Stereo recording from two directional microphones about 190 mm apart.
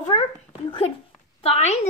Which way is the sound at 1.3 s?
30° left (ahead or behind).